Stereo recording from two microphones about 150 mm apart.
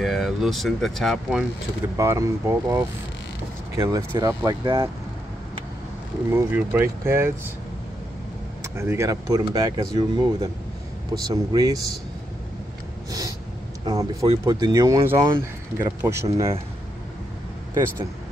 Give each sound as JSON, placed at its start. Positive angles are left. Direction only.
{"t": 0.0, "sound": "speech", "side_deg": 0}
{"t": 2.0, "sound": "speech", "side_deg": -20}
{"t": 6.3, "sound": "speech", "side_deg": -15}
{"t": 8.7, "sound": "speech", "side_deg": -15}
{"t": 13.8, "sound": "speech", "side_deg": -25}